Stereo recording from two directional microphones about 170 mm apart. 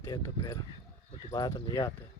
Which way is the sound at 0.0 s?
25° left (ahead or behind).